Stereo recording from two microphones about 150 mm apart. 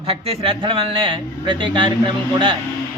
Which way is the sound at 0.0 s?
40° right (ahead or behind).